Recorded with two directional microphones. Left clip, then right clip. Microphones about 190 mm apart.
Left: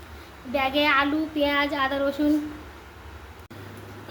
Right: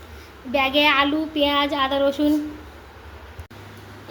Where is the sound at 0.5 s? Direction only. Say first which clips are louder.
Right 4 dB; 20° right (ahead or behind).